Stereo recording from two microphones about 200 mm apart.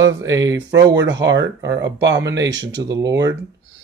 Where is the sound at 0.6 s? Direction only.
20° right (ahead or behind).